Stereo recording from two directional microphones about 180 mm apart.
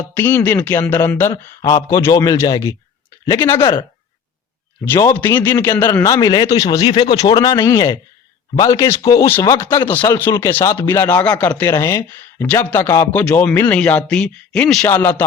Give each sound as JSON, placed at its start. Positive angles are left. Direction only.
{"t": 0.2, "sound": "a man's voice", "side_deg": 10}
{"t": 4.9, "sound": "a man's voice", "side_deg": 15}